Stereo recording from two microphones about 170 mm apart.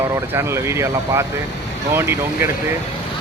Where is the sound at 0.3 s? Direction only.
15° right (ahead or behind).